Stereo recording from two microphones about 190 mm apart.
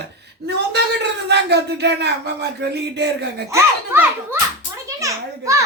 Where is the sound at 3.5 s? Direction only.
15° right (ahead or behind).